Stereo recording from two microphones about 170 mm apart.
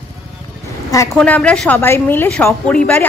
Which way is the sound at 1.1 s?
5° left (ahead or behind).